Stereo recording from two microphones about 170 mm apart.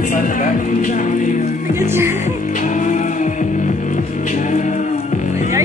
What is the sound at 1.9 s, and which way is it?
Music, 15° right (ahead or behind).